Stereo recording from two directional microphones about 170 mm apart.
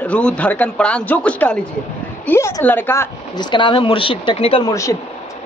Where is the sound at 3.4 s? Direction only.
30° left (ahead or behind).